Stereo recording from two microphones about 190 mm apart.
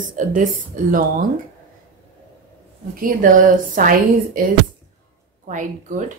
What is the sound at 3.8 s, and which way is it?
Speech, 45° right (ahead or behind).